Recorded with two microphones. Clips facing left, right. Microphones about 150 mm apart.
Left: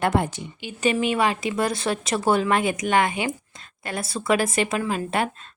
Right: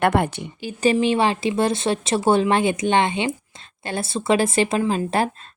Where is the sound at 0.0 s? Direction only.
60° right (ahead or behind).